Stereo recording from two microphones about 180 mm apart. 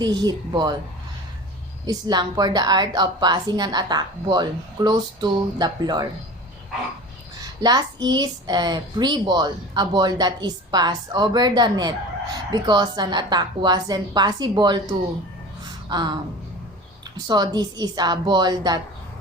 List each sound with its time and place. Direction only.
0.0 s a woman's voice: 25° right (ahead or behind)
1.9 s a woman's voice: 25° right (ahead or behind)
7.6 s a woman's voice: 20° right (ahead or behind)
15.9 s a woman's voice: 25° right (ahead or behind)
17.2 s a woman's voice: 20° right (ahead or behind)